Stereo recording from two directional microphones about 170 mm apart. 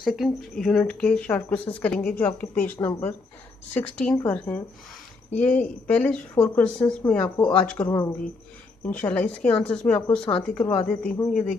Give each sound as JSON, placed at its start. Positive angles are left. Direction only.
{"t": 0.0, "sound": "speech", "side_deg": 0}
{"t": 7.8, "sound": "speech", "side_deg": 20}